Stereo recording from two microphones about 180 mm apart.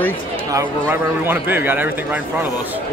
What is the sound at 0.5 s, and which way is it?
A man's voice, 10° right (ahead or behind).